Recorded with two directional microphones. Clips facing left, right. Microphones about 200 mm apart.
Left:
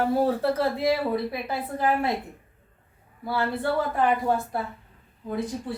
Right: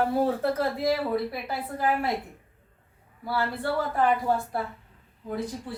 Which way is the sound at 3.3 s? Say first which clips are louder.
Left 2 dB; 20° left (ahead or behind).